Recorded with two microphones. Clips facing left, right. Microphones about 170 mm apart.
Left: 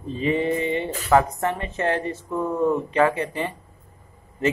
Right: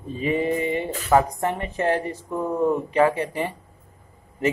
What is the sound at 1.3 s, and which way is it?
Speech, 10° right (ahead or behind).